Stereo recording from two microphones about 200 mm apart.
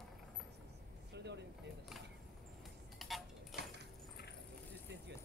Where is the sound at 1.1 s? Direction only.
60° right (ahead or behind).